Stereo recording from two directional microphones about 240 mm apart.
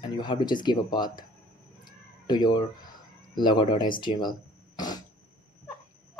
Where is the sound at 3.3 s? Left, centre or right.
Centre.